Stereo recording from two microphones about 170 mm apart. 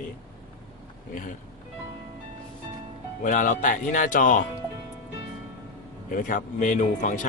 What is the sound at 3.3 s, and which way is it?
Speech, 50° left (ahead or behind).